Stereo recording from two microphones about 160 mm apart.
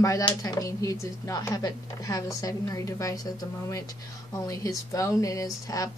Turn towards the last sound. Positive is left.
turn(degrees=20)  # may be behind; listen again after turning